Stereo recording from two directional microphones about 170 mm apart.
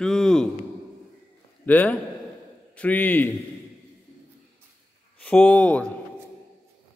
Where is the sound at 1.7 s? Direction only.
10° left (ahead or behind).